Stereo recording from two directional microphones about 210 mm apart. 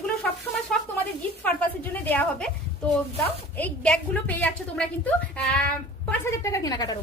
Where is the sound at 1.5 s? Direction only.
10° left (ahead or behind).